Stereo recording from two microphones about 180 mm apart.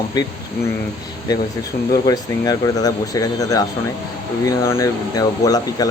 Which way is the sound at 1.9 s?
20° left (ahead or behind).